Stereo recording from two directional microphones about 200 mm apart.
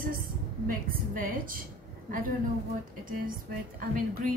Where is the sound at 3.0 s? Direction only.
45° right (ahead or behind).